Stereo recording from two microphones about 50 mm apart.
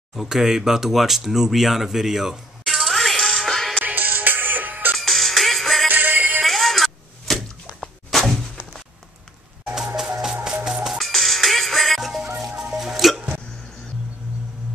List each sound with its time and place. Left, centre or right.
0.1 s speech: centre
3.8 s music: right
4.9 s music: centre
5.9 s music: right
6.4 s a sound: centre
10.4 s music: centre
11.0 s music: centre
12.4 s music: centre